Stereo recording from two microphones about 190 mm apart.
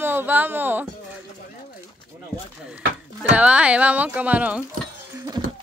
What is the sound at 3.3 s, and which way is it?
Speech, 5° right (ahead or behind).